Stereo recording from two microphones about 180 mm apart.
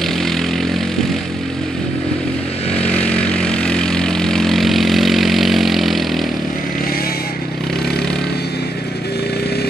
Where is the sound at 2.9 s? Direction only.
5° left (ahead or behind).